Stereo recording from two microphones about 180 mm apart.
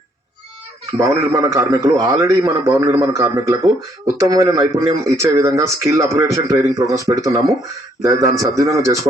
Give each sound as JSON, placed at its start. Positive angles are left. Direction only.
{"t": 0.9, "sound": "a man's voice", "side_deg": -15}